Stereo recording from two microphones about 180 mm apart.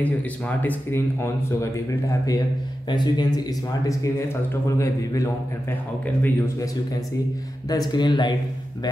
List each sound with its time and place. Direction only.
0.0 s speech: 10° left (ahead or behind); by 8.4 s 25° left (ahead or behind)